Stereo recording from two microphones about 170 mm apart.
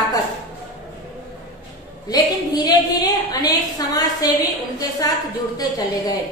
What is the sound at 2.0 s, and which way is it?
A woman's voice, 25° left (ahead or behind).